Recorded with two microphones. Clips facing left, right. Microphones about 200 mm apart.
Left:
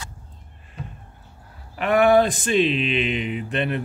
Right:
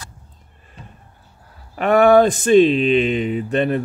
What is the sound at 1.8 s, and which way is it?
Speech, 45° right (ahead or behind).